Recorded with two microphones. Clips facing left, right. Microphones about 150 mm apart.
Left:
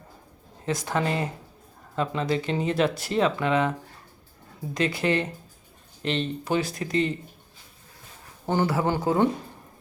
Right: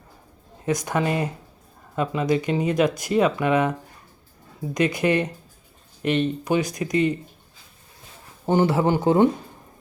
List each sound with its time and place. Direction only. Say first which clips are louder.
0.6 s speech: right 3 dB; 15° right (ahead or behind)
8.4 s speech: right 5 dB; 20° right (ahead or behind)